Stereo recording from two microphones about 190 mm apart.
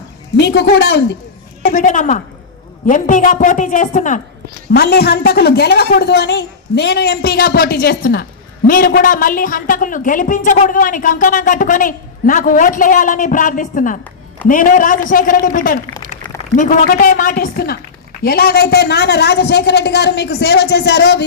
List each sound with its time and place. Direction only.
0.3 s a man's voice: 65° left (ahead or behind)
1.6 s a woman's voice: 45° left (ahead or behind)
4.7 s a woman's voice: 55° left (ahead or behind)